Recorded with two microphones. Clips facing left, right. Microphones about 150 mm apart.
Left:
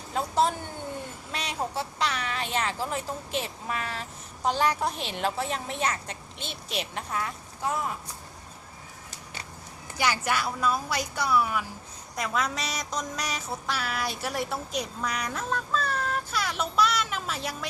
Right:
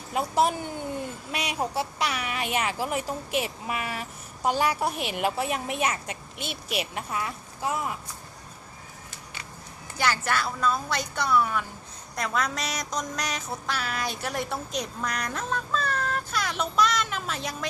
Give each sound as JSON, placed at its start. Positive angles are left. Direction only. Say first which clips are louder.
{"t": 0.1, "sound": "a woman's voice", "louder": "right 1 dB", "side_deg": -10}
{"t": 10.0, "sound": "a woman's voice", "louder": "right 1 dB", "side_deg": 10}
{"t": 12.1, "sound": "music", "louder": "right 1 dB", "side_deg": 0}